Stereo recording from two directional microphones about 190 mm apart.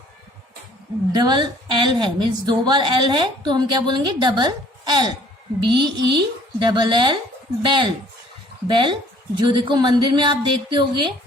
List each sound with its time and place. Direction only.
1.1 s a woman's voice: 20° right (ahead or behind)